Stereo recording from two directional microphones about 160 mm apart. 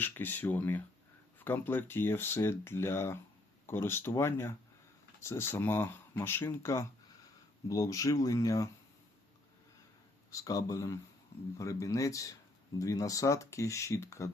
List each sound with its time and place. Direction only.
0.0 s speech: 10° left (ahead or behind)
10.3 s speech: 20° left (ahead or behind)